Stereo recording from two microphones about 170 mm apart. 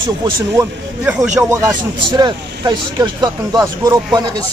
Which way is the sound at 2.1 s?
25° right (ahead or behind).